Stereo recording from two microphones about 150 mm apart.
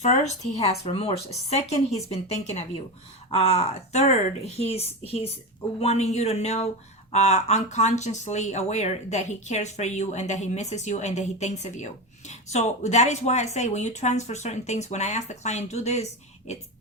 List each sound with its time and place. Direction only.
0.0 s speech: 50° left (ahead or behind)